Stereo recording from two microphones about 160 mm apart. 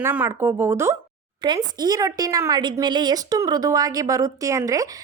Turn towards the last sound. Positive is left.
turn(degrees=-20)  # may be behind; listen again after turning